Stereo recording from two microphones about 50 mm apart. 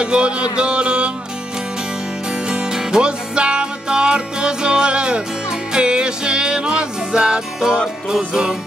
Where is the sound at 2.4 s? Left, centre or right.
Centre.